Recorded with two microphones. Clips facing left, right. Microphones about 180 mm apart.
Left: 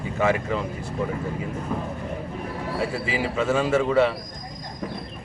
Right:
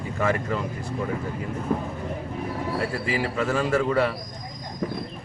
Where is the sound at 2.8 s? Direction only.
5° left (ahead or behind).